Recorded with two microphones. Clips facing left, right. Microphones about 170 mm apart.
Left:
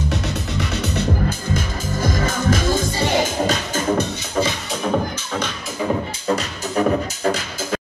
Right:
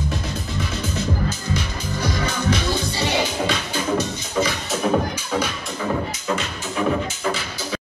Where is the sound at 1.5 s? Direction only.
45° left (ahead or behind).